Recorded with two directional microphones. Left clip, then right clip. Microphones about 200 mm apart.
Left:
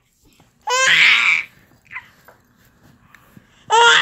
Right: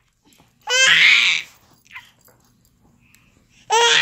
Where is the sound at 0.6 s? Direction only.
Centre (ahead or behind).